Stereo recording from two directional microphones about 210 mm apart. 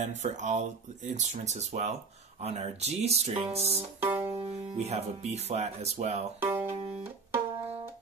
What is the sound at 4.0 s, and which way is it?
Music, 10° right (ahead or behind).